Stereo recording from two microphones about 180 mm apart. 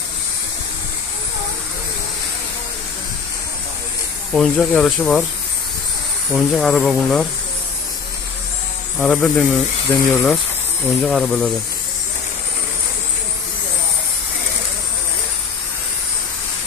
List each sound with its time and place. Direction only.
4.3 s speech: centre (ahead or behind)
6.3 s speech: centre (ahead or behind)
8.9 s speech: centre (ahead or behind)